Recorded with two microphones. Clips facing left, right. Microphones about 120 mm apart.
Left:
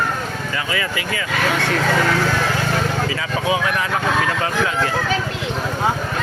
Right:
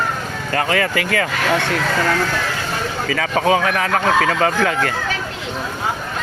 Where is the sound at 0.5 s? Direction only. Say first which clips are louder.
Right 8 dB; 55° right (ahead or behind).